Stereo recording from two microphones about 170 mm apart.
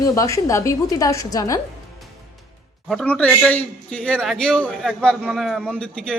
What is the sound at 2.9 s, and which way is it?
A man's voice, 5° left (ahead or behind).